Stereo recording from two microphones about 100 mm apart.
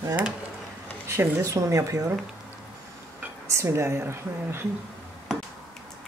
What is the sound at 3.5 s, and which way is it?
A woman's voice, 30° right (ahead or behind).